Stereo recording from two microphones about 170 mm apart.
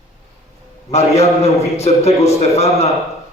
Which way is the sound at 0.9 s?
40° left (ahead or behind).